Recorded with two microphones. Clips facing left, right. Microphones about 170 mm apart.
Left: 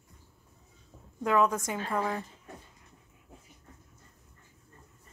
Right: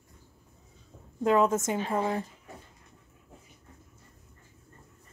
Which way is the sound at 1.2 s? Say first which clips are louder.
Right 3 dB; 25° right (ahead or behind).